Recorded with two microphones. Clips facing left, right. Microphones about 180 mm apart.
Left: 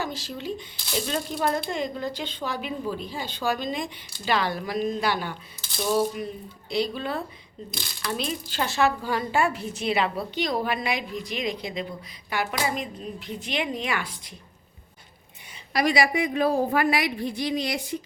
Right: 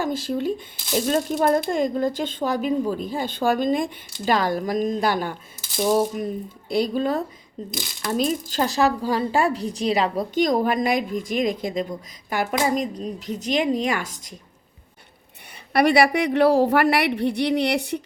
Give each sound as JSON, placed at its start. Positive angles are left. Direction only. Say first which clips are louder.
{"t": 0.0, "sound": "speech", "louder": "right 8 dB", "side_deg": -50}
{"t": 15.7, "sound": "a woman's voice", "louder": "right 5 dB", "side_deg": -60}